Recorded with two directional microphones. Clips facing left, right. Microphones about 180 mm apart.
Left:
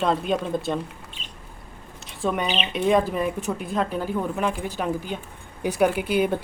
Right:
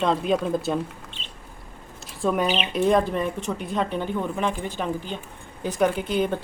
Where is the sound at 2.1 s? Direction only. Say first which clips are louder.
Right 2 dB; centre (ahead or behind).